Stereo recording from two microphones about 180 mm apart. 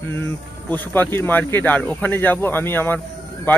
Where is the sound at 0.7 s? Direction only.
10° left (ahead or behind).